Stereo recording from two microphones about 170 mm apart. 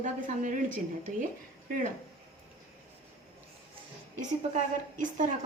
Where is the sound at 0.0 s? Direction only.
50° right (ahead or behind).